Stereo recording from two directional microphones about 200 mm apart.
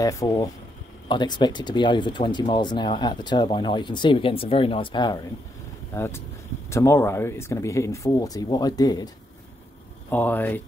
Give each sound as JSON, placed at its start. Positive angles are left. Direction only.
{"t": 0.0, "sound": "speech", "side_deg": 15}
{"t": 10.0, "sound": "speech", "side_deg": 10}